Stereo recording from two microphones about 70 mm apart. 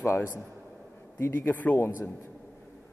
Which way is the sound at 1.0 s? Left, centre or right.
Left.